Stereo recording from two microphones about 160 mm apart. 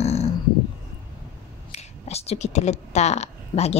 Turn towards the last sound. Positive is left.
turn(degrees=40)  # may be behind; listen again after turning